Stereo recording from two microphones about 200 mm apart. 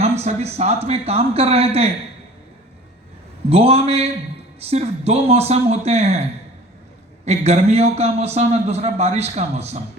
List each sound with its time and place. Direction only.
0.0 s a man's voice: 35° right (ahead or behind)
3.5 s a man's voice: 30° right (ahead or behind)
7.3 s a man's voice: 30° right (ahead or behind)